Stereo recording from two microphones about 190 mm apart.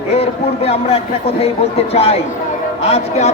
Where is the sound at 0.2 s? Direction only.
30° left (ahead or behind).